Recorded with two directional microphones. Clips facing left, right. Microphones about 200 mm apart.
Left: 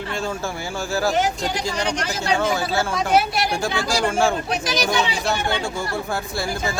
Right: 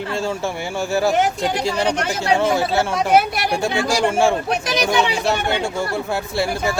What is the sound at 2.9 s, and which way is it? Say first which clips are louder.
Speech: right 2 dB; 60° right (ahead or behind).